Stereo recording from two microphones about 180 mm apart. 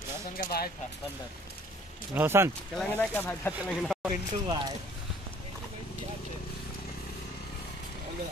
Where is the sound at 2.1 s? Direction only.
15° right (ahead or behind).